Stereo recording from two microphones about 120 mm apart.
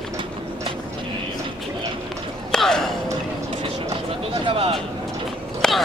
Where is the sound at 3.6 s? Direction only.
55° right (ahead or behind).